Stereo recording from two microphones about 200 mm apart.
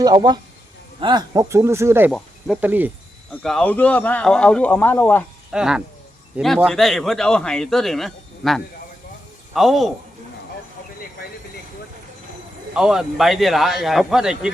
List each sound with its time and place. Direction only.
0.0 s speech: 20° right (ahead or behind)
3.4 s a man's voice: 5° left (ahead or behind)
5.5 s a man's voice: 5° right (ahead or behind)
12.7 s a man's voice: centre (ahead or behind)